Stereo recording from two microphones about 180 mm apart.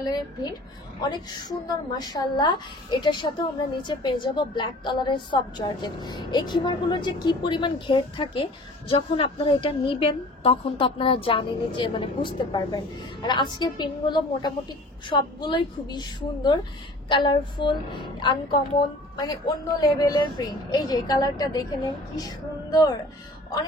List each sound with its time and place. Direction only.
0.0 s a woman's voice: 20° left (ahead or behind)